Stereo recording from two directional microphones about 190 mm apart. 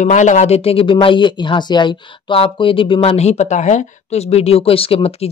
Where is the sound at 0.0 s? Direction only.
40° left (ahead or behind).